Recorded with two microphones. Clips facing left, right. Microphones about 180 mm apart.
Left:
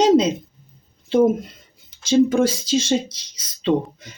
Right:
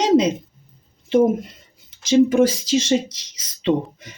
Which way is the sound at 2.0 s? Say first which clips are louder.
Right 1 dB; 20° right (ahead or behind).